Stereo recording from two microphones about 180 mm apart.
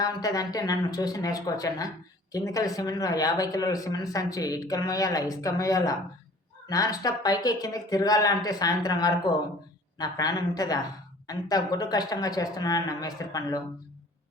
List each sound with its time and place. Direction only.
0.0 s speech: 20° left (ahead or behind)